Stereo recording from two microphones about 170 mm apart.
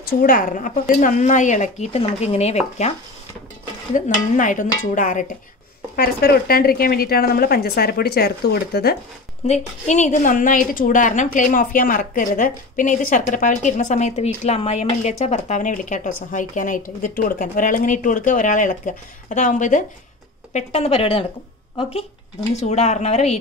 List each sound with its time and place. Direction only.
0.0 s a woman's voice: 55° left (ahead or behind); by 2.9 s 40° left (ahead or behind)
3.9 s a woman's voice: 50° left (ahead or behind)
5.9 s a woman's voice: 60° left (ahead or behind)
9.5 s a woman's voice: 45° left (ahead or behind)
22.6 s a woman's voice: 40° left (ahead or behind)